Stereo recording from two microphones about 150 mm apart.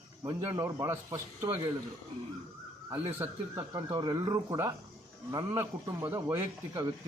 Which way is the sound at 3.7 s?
25° right (ahead or behind).